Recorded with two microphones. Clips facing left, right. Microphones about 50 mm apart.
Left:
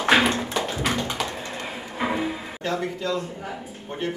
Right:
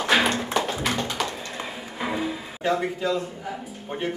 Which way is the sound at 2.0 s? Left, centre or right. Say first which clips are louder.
Left 2 dB; centre.